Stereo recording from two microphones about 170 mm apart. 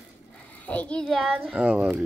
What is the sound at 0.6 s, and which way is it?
Speech, 10° left (ahead or behind).